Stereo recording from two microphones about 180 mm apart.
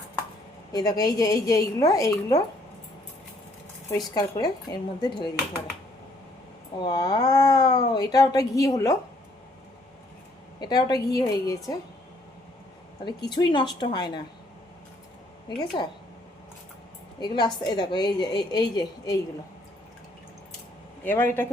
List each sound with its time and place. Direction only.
0.7 s speech: 20° left (ahead or behind)
3.9 s speech: 20° left (ahead or behind)
6.8 s speech: 20° left (ahead or behind)
10.6 s speech: 20° left (ahead or behind)
13.1 s speech: 25° left (ahead or behind)
15.4 s speech: 25° left (ahead or behind)
17.2 s speech: 25° left (ahead or behind)
21.0 s speech: 10° left (ahead or behind)